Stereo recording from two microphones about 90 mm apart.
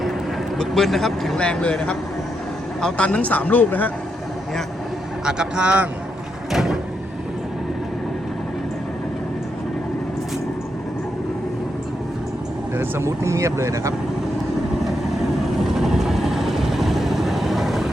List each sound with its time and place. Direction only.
0.5 s speech: centre (ahead or behind); by 3.9 s 20° left (ahead or behind)
5.2 s a man's voice: 10° right (ahead or behind)
6.5 s a sound: 5° right (ahead or behind)
12.7 s speech: 25° right (ahead or behind)
15.6 s vehicle: 5° right (ahead or behind)